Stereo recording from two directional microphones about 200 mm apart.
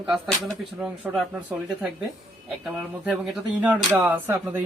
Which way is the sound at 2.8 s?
Centre (ahead or behind).